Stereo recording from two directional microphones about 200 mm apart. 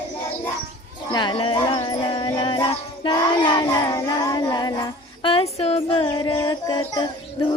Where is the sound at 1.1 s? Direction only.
25° left (ahead or behind).